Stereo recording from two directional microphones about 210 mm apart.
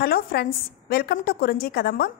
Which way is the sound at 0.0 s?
45° left (ahead or behind).